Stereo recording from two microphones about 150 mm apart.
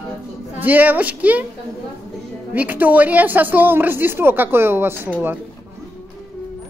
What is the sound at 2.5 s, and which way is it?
Speech, 10° right (ahead or behind).